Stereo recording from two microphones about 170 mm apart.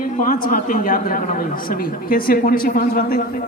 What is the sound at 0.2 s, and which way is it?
Speech, 55° left (ahead or behind).